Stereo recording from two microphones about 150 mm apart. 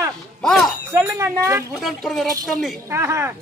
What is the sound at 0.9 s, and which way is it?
Speech, 15° right (ahead or behind).